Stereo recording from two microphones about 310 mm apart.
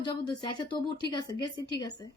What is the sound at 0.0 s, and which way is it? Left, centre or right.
Speech, centre.